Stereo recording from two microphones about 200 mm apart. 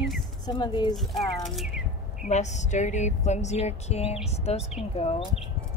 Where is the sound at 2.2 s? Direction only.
35° left (ahead or behind).